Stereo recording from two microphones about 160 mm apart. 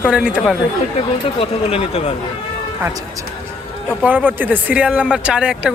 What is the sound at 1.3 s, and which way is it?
Speech, 35° left (ahead or behind).